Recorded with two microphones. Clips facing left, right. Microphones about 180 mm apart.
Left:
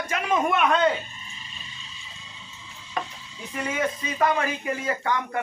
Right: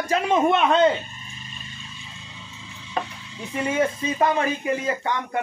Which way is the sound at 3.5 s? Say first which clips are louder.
Right 4 dB; 25° right (ahead or behind).